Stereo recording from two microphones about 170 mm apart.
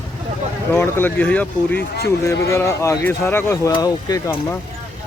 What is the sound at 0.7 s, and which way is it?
Speech, 10° left (ahead or behind).